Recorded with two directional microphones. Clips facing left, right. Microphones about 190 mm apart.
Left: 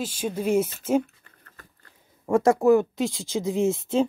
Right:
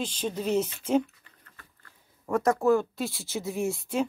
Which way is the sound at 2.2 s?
25° left (ahead or behind).